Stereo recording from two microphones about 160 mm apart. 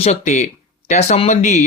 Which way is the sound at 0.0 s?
45° left (ahead or behind).